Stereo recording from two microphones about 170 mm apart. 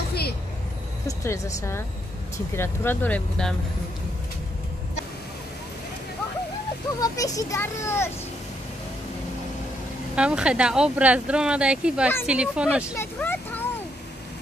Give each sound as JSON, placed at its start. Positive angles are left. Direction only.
{"t": 1.0, "sound": "speech", "side_deg": 15}
{"t": 7.0, "sound": "a child's voice", "side_deg": 20}
{"t": 10.1, "sound": "speech", "side_deg": -5}
{"t": 12.9, "sound": "hubbub", "side_deg": 15}